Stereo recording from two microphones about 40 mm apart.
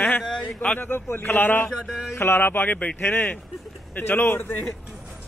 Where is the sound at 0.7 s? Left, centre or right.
Left.